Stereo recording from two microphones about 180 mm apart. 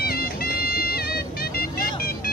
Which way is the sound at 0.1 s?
55° left (ahead or behind).